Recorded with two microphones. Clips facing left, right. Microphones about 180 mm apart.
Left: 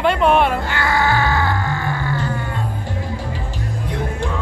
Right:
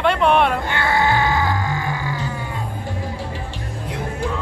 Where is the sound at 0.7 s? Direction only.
20° right (ahead or behind).